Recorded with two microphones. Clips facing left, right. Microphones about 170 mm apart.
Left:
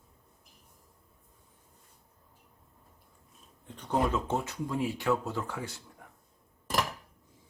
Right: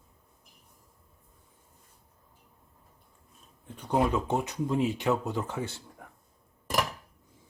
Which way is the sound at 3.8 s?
10° right (ahead or behind).